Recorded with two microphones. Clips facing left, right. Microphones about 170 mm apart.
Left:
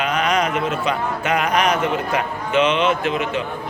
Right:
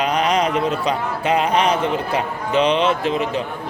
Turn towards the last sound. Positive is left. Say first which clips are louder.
# right 1 dB
turn(degrees=-35)  # may be behind; listen again after turning